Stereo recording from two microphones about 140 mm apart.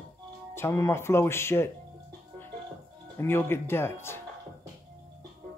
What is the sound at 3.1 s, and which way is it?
Speech, 15° left (ahead or behind).